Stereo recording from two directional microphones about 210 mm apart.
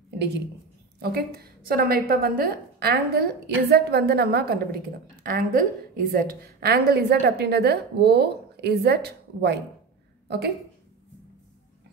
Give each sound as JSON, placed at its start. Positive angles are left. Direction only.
{"t": 0.9, "sound": "a woman's voice", "side_deg": -50}